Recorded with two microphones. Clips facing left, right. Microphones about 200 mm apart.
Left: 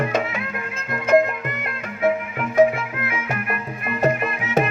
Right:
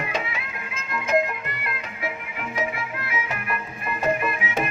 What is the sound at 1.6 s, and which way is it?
Music, 50° left (ahead or behind).